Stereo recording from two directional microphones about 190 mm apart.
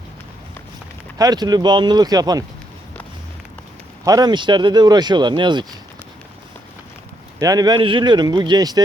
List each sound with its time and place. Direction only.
1.2 s speech: 20° right (ahead or behind)
4.0 s speech: 20° right (ahead or behind)
7.3 s speech: 20° right (ahead or behind)